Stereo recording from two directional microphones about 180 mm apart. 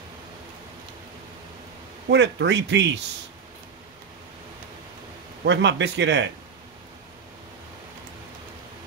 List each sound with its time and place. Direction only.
2.0 s speech: 75° right (ahead or behind)
5.4 s speech: 75° right (ahead or behind)